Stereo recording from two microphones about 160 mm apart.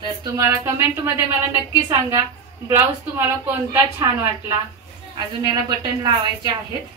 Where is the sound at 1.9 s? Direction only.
25° right (ahead or behind).